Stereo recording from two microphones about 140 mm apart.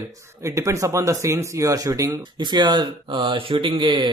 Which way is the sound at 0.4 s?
20° right (ahead or behind).